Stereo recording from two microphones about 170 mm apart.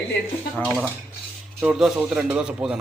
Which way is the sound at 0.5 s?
5° left (ahead or behind).